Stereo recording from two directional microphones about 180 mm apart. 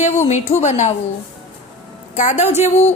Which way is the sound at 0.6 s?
40° left (ahead or behind).